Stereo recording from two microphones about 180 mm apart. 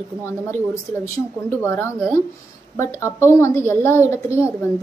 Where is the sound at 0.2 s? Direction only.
15° left (ahead or behind).